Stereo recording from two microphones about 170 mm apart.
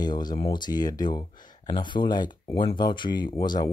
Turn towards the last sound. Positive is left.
turn(degrees=25)  # may be behind; listen again after turning